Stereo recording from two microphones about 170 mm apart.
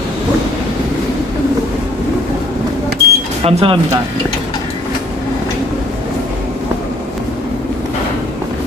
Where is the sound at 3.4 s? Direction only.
30° right (ahead or behind).